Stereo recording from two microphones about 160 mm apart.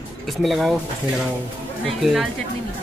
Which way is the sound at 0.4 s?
Centre (ahead or behind).